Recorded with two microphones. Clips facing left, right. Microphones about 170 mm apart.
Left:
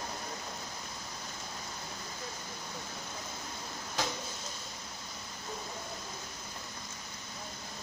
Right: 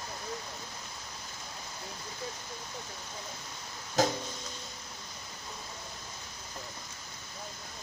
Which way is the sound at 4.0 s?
45° right (ahead or behind).